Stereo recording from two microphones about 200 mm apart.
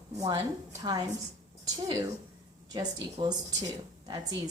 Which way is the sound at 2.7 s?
20° right (ahead or behind).